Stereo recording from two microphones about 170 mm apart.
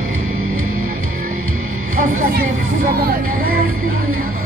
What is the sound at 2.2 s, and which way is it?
Music, 55° right (ahead or behind).